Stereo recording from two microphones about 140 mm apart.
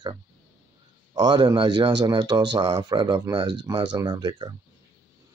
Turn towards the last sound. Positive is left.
turn(degrees=-30)  # may be behind; listen again after turning